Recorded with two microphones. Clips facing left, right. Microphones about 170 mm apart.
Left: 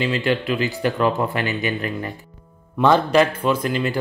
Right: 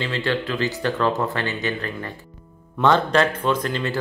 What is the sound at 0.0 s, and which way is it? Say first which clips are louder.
Speech: left 3 dB; 15° left (ahead or behind).